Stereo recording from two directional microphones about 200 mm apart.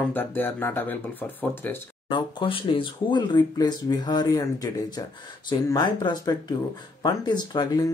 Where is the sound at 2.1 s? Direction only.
25° left (ahead or behind).